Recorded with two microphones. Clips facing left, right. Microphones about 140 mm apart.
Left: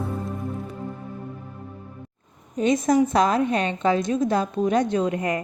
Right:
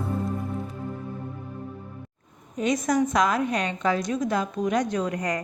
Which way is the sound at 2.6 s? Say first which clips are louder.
Left 4 dB; 25° left (ahead or behind).